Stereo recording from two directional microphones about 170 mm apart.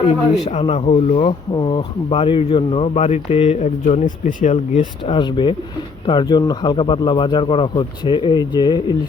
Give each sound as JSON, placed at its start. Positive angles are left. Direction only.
{"t": 0.4, "sound": "speech", "side_deg": 40}
{"t": 4.8, "sound": "speech", "side_deg": 30}